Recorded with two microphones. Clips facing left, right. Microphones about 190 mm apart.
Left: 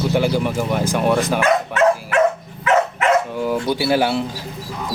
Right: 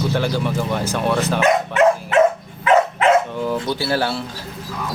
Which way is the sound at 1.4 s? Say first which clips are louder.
Right 1 dB; 20° right (ahead or behind).